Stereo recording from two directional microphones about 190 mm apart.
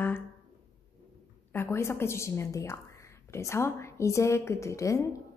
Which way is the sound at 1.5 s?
10° left (ahead or behind).